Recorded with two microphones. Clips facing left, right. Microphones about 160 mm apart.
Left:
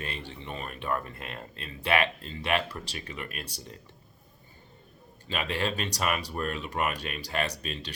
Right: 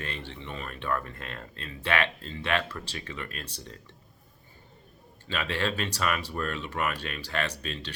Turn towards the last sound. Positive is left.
turn(degrees=15)  # may be behind; listen again after turning